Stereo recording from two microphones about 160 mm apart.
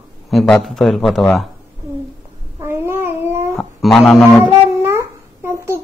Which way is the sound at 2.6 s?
15° right (ahead or behind).